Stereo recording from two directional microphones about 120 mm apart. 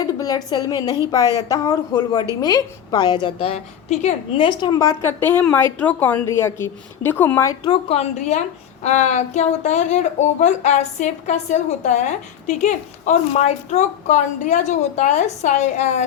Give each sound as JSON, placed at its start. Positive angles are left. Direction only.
{"t": 0.0, "sound": "a woman's voice", "side_deg": 30}
{"t": 3.4, "sound": "a woman's voice", "side_deg": 70}
{"t": 4.4, "sound": "a woman's voice", "side_deg": 40}
{"t": 4.8, "sound": "a woman's voice", "side_deg": 20}
{"t": 7.9, "sound": "a woman's voice", "side_deg": 70}